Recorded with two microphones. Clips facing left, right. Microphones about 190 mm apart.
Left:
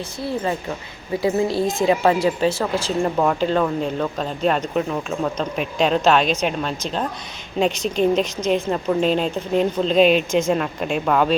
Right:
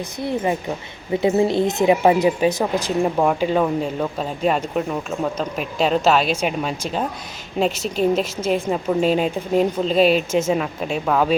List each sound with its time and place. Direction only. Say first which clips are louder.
0.2 s a woman's voice: right 2 dB; 20° right (ahead or behind); by 11.3 s 5° right (ahead or behind)